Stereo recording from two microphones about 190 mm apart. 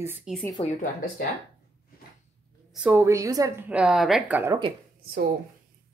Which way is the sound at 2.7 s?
10° right (ahead or behind).